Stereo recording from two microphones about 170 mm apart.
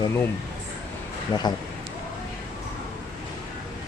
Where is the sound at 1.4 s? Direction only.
25° left (ahead or behind).